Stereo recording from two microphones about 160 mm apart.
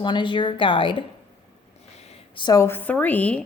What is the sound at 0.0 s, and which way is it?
A woman's voice, 30° left (ahead or behind).